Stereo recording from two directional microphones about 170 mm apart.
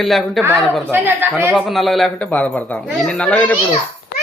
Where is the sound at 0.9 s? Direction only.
10° right (ahead or behind).